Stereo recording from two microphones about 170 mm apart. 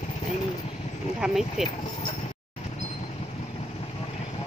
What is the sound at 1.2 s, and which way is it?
Speech, centre (ahead or behind).